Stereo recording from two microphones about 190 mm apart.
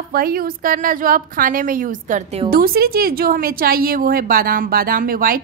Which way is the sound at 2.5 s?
50° right (ahead or behind).